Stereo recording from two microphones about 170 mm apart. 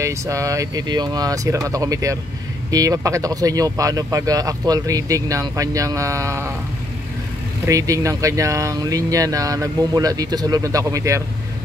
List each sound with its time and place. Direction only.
0.0 s speech: 20° right (ahead or behind)
7.6 s speech: 20° right (ahead or behind)